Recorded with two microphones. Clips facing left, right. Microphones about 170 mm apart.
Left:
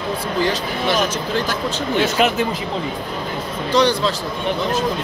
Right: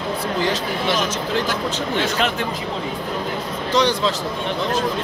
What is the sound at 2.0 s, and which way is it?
Speech, 10° left (ahead or behind).